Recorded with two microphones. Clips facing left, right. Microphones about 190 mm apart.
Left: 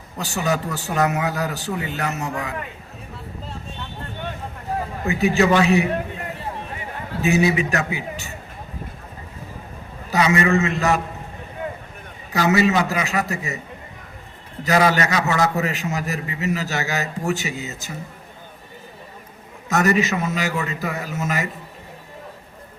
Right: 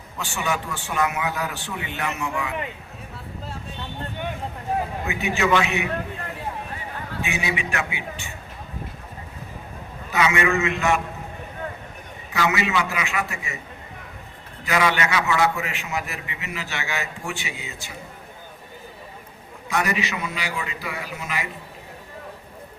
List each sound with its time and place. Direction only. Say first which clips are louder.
0.2 s a man's voice: left 4 dB; 40° left (ahead or behind)
5.0 s a man's voice: left 8 dB; 35° left (ahead or behind)
7.2 s a man's voice: left 10 dB; 40° left (ahead or behind)
10.1 s a man's voice: left 3 dB; 35° left (ahead or behind)
12.3 s a man's voice: left 5 dB; 40° left (ahead or behind)
14.6 s a man's voice: left 4 dB; 40° left (ahead or behind)
19.6 s a man's voice: left 6 dB; 45° left (ahead or behind)